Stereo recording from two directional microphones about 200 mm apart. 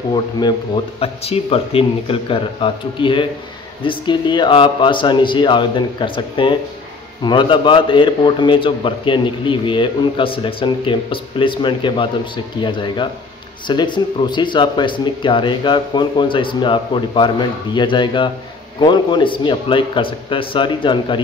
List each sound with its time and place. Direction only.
0.1 s a man's voice: 20° left (ahead or behind)